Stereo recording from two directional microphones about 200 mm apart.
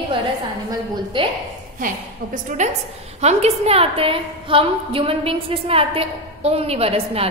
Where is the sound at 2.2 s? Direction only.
45° right (ahead or behind).